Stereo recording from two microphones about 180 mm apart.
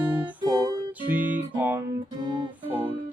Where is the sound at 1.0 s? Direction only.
10° right (ahead or behind).